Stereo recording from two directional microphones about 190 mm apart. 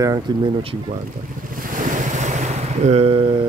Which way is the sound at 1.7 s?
45° right (ahead or behind).